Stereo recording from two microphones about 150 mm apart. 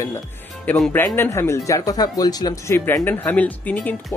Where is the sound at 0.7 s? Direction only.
10° left (ahead or behind).